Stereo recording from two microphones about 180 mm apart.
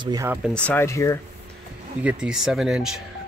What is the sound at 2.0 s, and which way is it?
Speech, 5° right (ahead or behind).